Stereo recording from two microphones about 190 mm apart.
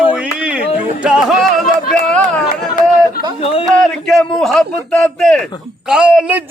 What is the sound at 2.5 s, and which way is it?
Chatter, 45° left (ahead or behind).